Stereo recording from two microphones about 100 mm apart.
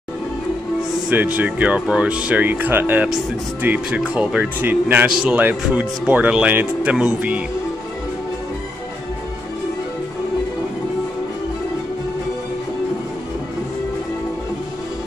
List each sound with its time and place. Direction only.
1.1 s speech: 15° right (ahead or behind)